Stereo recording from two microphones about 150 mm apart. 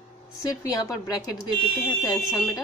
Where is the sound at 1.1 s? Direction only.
25° left (ahead or behind).